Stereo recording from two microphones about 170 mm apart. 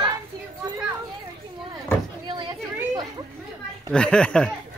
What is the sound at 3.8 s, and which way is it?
Speech, 5° left (ahead or behind).